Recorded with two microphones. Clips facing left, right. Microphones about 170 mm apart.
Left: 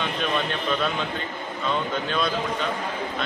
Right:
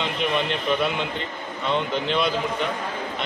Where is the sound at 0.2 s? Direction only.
15° right (ahead or behind).